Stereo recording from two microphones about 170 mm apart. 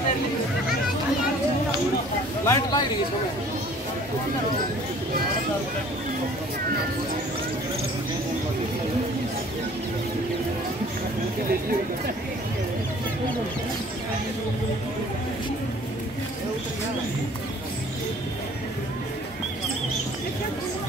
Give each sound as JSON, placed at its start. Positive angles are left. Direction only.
{"t": 2.4, "sound": "speech", "side_deg": 20}